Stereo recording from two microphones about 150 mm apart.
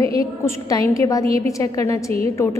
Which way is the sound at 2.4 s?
15° left (ahead or behind).